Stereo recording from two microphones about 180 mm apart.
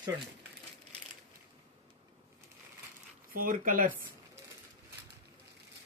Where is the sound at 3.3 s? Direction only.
50° right (ahead or behind).